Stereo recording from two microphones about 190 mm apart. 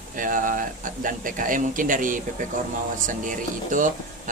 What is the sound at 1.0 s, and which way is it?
Speech, 45° right (ahead or behind).